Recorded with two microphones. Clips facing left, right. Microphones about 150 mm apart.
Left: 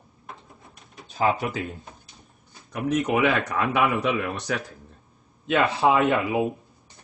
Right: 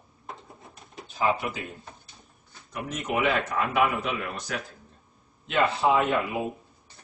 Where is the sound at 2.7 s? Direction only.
65° left (ahead or behind).